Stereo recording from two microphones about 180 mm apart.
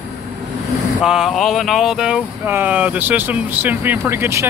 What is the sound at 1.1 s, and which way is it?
Speech, centre (ahead or behind).